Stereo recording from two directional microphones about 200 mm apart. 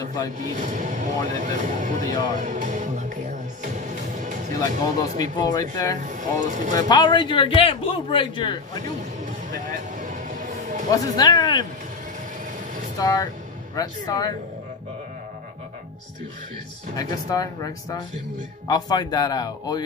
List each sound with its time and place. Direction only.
0.0 s a sound: 15° left (ahead or behind)
0.6 s a sound: 40° right (ahead or behind)
4.6 s a man's voice: 20° left (ahead or behind)
6.4 s speech: 40° right (ahead or behind)
6.9 s a man's voice: 20° left (ahead or behind)
9.9 s music: 40° right (ahead or behind)
10.9 s a man's voice: 20° left (ahead or behind)
13.0 s a man's voice: 20° left (ahead or behind)
16.9 s a man's voice: 20° left (ahead or behind)